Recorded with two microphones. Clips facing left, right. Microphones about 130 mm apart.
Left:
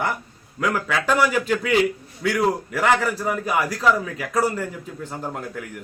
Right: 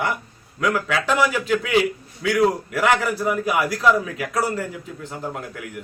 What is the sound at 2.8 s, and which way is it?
Speech, 5° right (ahead or behind).